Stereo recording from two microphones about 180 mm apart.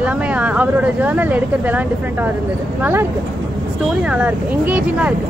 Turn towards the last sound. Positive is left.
turn(degrees=-10)  # may be behind; listen again after turning